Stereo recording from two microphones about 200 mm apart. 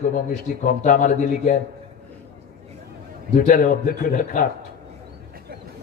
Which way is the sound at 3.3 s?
45° left (ahead or behind).